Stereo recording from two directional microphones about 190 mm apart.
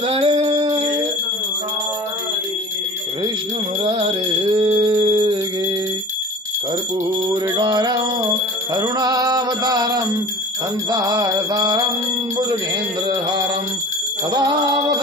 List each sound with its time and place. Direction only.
0.0 s music: 30° right (ahead or behind)
3.8 s music: 30° right (ahead or behind)
7.2 s music: 25° right (ahead or behind)